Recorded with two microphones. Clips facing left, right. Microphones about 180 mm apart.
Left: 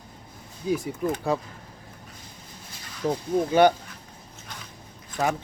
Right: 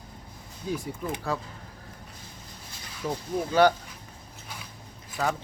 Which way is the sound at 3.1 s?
20° left (ahead or behind).